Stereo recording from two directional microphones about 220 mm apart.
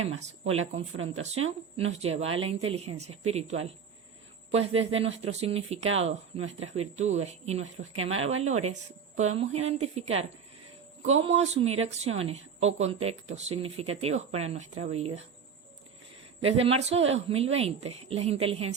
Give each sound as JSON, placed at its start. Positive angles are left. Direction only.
{"t": 0.7, "sound": "speech", "side_deg": -30}
{"t": 16.4, "sound": "speech", "side_deg": -25}